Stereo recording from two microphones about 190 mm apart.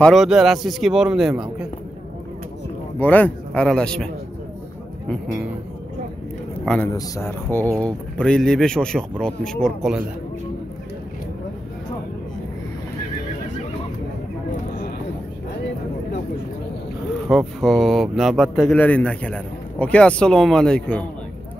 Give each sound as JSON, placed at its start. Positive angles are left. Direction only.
{"t": 0.0, "sound": "speech", "side_deg": 0}
{"t": 3.0, "sound": "speech", "side_deg": 10}
{"t": 6.6, "sound": "a man's voice", "side_deg": 5}
{"t": 6.9, "sound": "speech", "side_deg": 15}
{"t": 7.8, "sound": "speech", "side_deg": 5}
{"t": 17.3, "sound": "speech", "side_deg": 0}